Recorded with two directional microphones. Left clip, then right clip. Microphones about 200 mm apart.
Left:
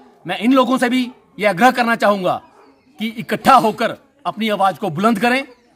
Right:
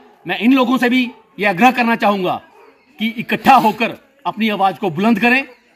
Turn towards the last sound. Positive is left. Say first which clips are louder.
# right 2 dB
turn(degrees=30)  # may be behind; listen again after turning